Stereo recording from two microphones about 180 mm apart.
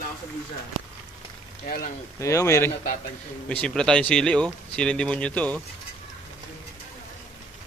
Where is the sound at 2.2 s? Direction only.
15° left (ahead or behind).